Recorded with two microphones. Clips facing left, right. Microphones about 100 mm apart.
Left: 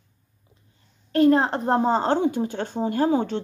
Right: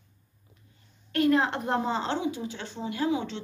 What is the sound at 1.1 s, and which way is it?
A woman's voice, 35° left (ahead or behind).